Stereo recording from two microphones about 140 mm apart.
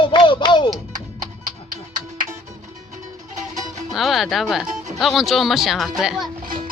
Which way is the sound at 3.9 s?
Centre (ahead or behind).